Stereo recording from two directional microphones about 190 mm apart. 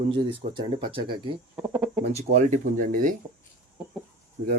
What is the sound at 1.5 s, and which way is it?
Speech, 5° right (ahead or behind).